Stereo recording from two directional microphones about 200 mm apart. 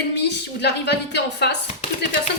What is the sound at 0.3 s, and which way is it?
Speech, 60° left (ahead or behind).